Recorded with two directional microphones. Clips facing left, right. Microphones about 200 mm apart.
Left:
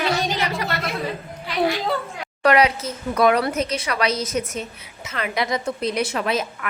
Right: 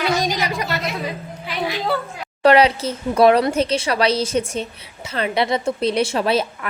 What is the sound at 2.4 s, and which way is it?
Speech, 30° right (ahead or behind).